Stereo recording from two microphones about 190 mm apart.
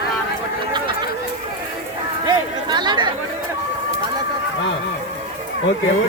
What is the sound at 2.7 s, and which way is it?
Speech, 25° right (ahead or behind).